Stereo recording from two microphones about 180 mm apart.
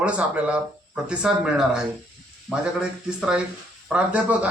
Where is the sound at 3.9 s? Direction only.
5° right (ahead or behind).